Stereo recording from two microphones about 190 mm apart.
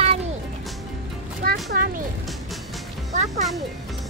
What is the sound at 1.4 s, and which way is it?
Music, 50° right (ahead or behind).